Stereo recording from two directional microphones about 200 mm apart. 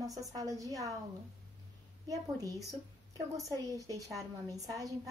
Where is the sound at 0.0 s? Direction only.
15° right (ahead or behind).